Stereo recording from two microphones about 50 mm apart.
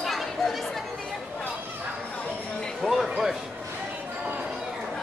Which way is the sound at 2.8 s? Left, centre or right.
Centre.